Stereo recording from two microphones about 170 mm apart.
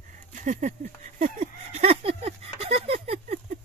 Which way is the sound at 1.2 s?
40° right (ahead or behind).